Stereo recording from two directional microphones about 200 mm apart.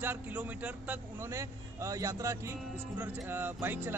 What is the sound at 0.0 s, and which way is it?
Speech, 10° right (ahead or behind).